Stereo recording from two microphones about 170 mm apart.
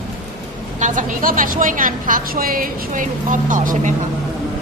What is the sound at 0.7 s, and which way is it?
A woman's voice, 50° right (ahead or behind).